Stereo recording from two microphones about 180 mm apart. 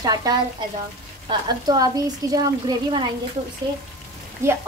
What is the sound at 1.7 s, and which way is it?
A woman's voice, 20° right (ahead or behind).